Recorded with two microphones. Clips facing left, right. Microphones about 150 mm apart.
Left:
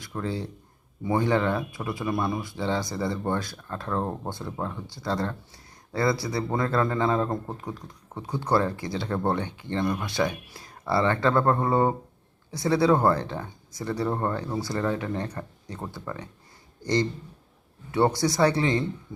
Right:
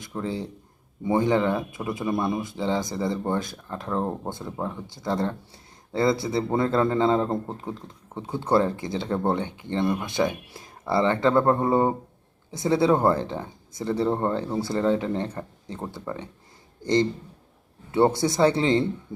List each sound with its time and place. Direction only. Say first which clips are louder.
0.0 s a man's voice: right 1 dB; 20° right (ahead or behind)